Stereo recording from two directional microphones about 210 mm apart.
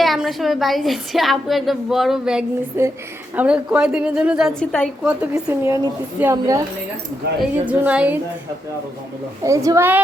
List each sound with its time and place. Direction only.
0.0 s a woman's voice: centre (ahead or behind)
5.0 s a woman's voice: 10° right (ahead or behind)
7.2 s speech: 50° right (ahead or behind)
7.7 s a woman's voice: 5° right (ahead or behind)
9.4 s a woman's voice: 15° right (ahead or behind)